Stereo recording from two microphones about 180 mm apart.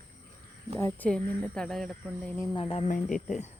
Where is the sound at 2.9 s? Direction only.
45° left (ahead or behind).